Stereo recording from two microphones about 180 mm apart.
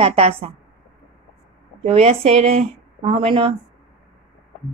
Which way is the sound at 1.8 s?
35° right (ahead or behind).